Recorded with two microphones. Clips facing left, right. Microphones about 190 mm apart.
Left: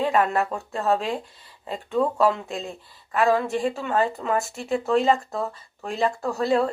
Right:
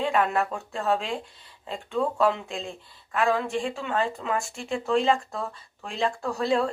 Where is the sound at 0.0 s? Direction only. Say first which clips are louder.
Left 2 dB; 5° left (ahead or behind).